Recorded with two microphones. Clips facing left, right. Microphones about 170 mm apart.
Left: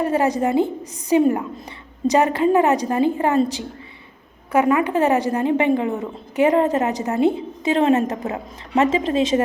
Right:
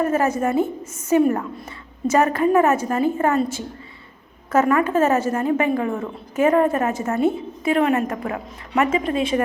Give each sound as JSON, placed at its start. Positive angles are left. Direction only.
{"t": 0.0, "sound": "a woman's voice", "side_deg": 15}